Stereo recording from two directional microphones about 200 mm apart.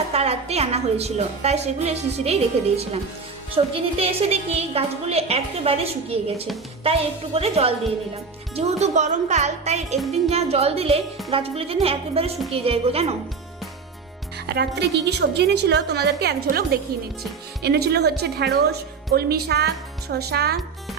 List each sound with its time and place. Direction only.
0.1 s a woman's voice: 30° right (ahead or behind)
14.4 s a woman's voice: 55° right (ahead or behind)